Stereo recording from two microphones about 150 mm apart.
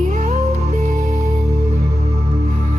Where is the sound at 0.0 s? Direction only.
50° right (ahead or behind).